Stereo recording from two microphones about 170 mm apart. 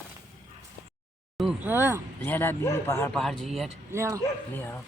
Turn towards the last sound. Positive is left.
turn(degrees=15)  # may be behind; listen again after turning